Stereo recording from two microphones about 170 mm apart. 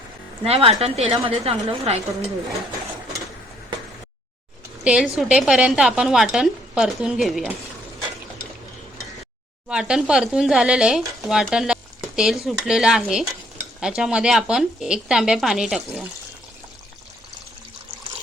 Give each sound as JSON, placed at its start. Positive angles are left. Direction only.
{"t": 0.4, "sound": "speech", "side_deg": -35}
{"t": 4.8, "sound": "speech", "side_deg": -5}
{"t": 9.6, "sound": "speech", "side_deg": -5}